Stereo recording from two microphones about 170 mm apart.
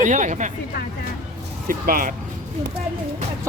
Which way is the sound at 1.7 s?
55° right (ahead or behind).